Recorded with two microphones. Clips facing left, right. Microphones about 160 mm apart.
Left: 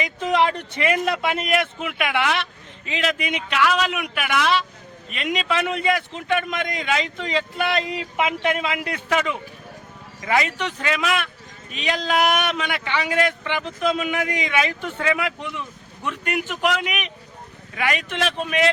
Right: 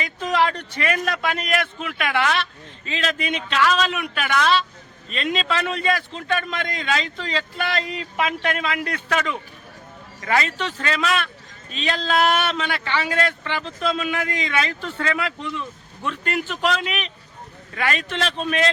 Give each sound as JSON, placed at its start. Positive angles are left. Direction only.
{"t": 0.0, "sound": "speech", "side_deg": 20}